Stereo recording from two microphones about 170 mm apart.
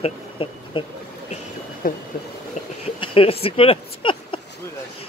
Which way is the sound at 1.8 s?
55° left (ahead or behind).